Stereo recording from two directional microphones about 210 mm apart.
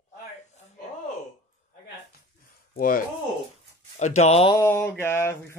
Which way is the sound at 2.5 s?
45° left (ahead or behind).